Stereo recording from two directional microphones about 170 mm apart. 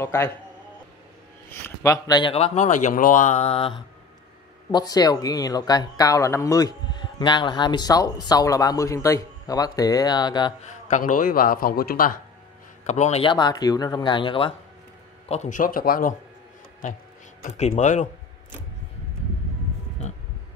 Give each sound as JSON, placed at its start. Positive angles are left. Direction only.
{"t": 0.0, "sound": "speech", "side_deg": 15}
{"t": 1.6, "sound": "speech", "side_deg": 20}
{"t": 2.3, "sound": "speech", "side_deg": 40}
{"t": 4.6, "sound": "speech", "side_deg": 20}
{"t": 10.9, "sound": "a man's voice", "side_deg": 50}
{"t": 12.8, "sound": "speech", "side_deg": 40}
{"t": 13.2, "sound": "speech", "side_deg": 25}
{"t": 15.2, "sound": "speech", "side_deg": 40}
{"t": 17.5, "sound": "speech", "side_deg": 40}